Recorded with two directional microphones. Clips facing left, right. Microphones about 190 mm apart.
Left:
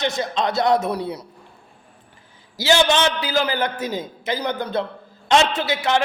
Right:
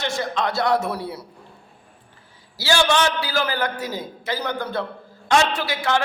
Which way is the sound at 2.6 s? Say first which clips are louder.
Left 2 dB; 20° left (ahead or behind).